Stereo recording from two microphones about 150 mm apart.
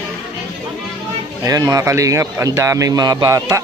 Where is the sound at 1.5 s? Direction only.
25° right (ahead or behind).